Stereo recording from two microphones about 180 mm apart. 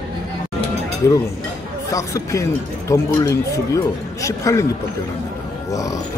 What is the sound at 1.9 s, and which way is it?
A man's voice, 20° left (ahead or behind).